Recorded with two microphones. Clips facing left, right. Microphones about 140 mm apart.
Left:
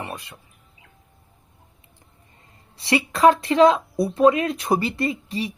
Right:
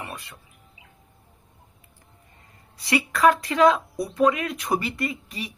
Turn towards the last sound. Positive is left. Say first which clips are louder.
# left 5 dB
turn(degrees=30)  # may be behind; listen again after turning